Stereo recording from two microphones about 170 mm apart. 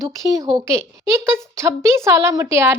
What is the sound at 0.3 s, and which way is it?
Speech, 25° right (ahead or behind).